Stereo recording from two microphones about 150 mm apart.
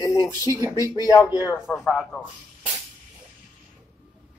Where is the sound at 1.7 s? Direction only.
10° left (ahead or behind).